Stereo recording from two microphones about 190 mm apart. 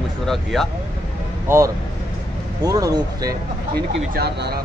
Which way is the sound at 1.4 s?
15° right (ahead or behind).